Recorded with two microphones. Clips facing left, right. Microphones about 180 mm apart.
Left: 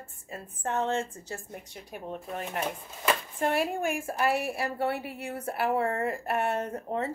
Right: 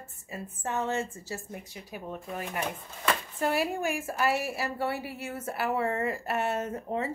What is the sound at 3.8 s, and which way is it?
Speech, 50° left (ahead or behind).